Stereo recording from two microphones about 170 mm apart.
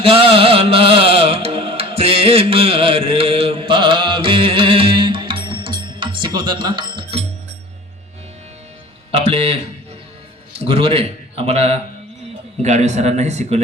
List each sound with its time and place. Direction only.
0.0 s music: 35° right (ahead or behind)
9.1 s a man's voice: 40° right (ahead or behind)